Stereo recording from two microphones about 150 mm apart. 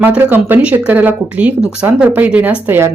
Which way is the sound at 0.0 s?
10° right (ahead or behind).